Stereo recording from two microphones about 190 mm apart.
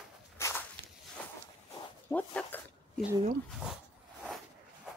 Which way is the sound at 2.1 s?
10° left (ahead or behind).